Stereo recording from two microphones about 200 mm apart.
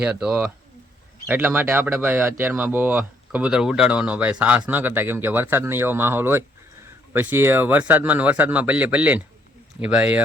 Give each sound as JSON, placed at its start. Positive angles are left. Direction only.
{"t": 0.0, "sound": "speech", "side_deg": -5}